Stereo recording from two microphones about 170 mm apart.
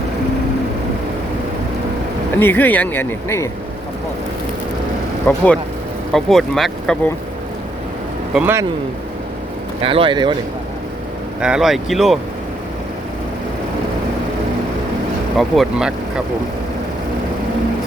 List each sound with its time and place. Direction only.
2.4 s speech: 10° left (ahead or behind)
5.3 s speech: 10° left (ahead or behind)
8.3 s speech: 5° right (ahead or behind)
9.8 s speech: 30° right (ahead or behind)
11.3 s speech: 5° right (ahead or behind)
15.4 s speech: centre (ahead or behind)